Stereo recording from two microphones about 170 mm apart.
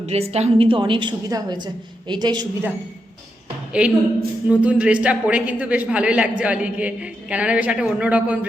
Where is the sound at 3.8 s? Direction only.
5° right (ahead or behind).